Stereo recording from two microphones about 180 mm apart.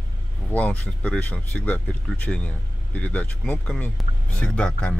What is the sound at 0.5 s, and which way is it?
Speech, 10° left (ahead or behind).